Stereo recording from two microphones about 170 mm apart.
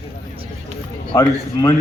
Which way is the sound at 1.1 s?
20° left (ahead or behind).